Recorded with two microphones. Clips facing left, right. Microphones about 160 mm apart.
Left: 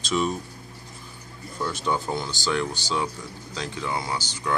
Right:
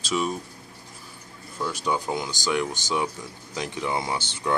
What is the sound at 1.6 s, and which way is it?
Speech, 10° right (ahead or behind).